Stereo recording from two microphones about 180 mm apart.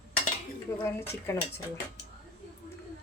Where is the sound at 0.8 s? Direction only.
15° left (ahead or behind).